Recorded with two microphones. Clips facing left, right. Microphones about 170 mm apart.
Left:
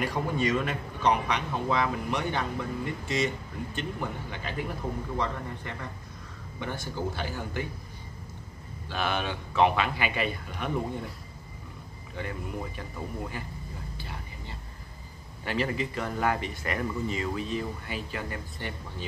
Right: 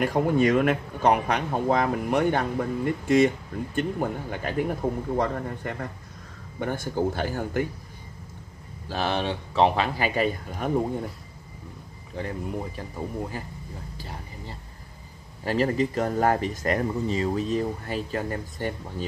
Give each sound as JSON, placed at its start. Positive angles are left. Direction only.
{"t": 0.0, "sound": "speech", "side_deg": -50}
{"t": 8.8, "sound": "speech", "side_deg": -35}
{"t": 12.2, "sound": "speech", "side_deg": -35}
{"t": 13.9, "sound": "a sound", "side_deg": -40}
{"t": 15.4, "sound": "speech", "side_deg": -40}